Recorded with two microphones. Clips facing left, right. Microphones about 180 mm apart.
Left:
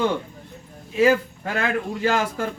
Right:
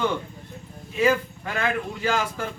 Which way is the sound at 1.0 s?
40° left (ahead or behind).